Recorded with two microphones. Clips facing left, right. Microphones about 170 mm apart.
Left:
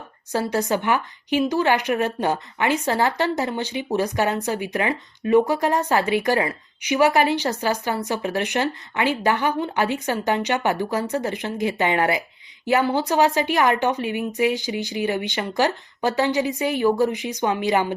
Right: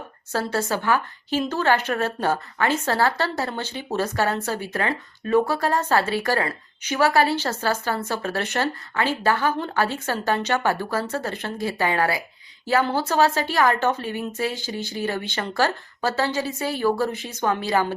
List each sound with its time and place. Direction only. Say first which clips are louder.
0.3 s a woman's voice: left 3 dB; 15° left (ahead or behind)